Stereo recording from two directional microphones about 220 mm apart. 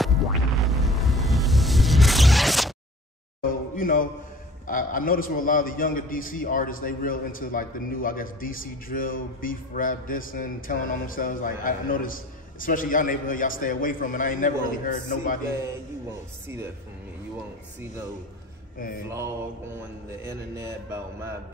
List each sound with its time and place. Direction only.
0.0 s music: centre (ahead or behind)
3.4 s a sound: 40° left (ahead or behind)
4.6 s a man's voice: 40° left (ahead or behind)
20.2 s mantra: 15° right (ahead or behind)